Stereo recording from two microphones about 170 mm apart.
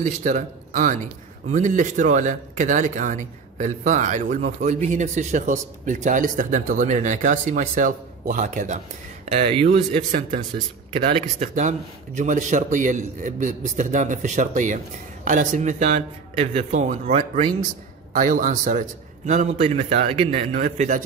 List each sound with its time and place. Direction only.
0.0 s speech: 50° right (ahead or behind); by 9.8 s 35° right (ahead or behind)
11.1 s speech: 45° right (ahead or behind)